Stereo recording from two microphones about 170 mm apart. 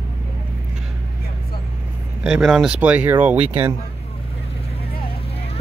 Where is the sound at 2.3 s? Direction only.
5° right (ahead or behind).